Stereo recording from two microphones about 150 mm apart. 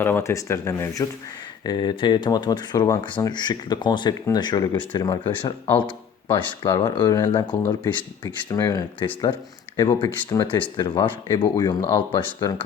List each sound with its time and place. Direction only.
0.0 s speech: 15° left (ahead or behind)